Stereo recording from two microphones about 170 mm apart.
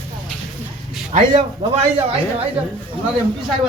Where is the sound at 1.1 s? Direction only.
45° right (ahead or behind).